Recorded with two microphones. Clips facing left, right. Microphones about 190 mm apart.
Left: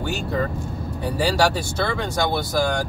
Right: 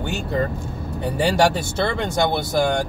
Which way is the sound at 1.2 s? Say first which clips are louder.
Right 2 dB; 20° right (ahead or behind).